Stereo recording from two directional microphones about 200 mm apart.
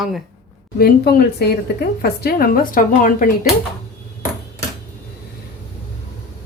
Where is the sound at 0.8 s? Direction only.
50° left (ahead or behind).